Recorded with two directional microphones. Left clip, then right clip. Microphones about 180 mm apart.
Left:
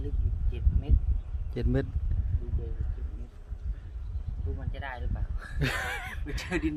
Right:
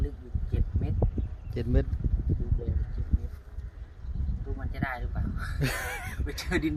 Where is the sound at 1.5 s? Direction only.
5° left (ahead or behind).